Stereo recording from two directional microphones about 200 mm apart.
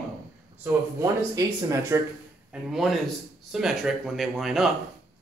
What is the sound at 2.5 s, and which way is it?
Speech, centre (ahead or behind).